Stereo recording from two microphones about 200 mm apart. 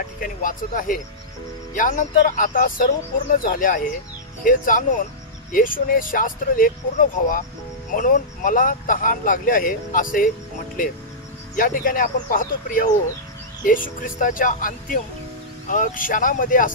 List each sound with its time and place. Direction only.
0.2 s speech: 40° left (ahead or behind)
11.5 s speech: 45° left (ahead or behind)